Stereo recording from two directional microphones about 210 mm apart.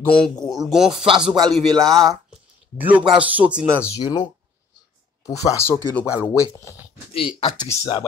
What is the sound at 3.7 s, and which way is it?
Speech, 15° left (ahead or behind).